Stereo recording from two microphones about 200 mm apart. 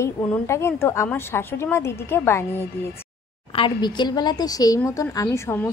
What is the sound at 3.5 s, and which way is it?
A woman's voice, 25° left (ahead or behind).